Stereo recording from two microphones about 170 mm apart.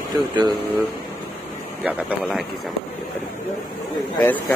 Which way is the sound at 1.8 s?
10° right (ahead or behind).